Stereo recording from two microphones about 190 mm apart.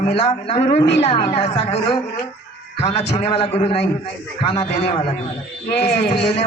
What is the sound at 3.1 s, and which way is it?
Speech, 35° left (ahead or behind).